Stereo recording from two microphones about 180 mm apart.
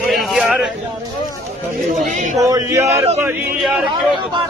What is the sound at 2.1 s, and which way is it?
Speech, 45° right (ahead or behind).